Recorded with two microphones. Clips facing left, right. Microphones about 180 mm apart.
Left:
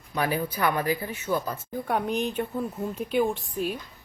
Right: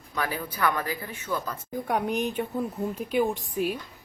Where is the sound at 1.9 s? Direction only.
10° right (ahead or behind).